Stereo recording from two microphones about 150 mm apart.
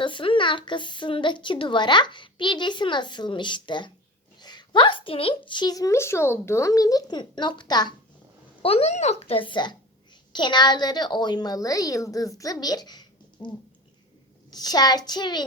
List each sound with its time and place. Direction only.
0.0 s a woman's voice: 35° left (ahead or behind)
8.6 s a woman's voice: 40° left (ahead or behind)
14.5 s a woman's voice: 25° left (ahead or behind)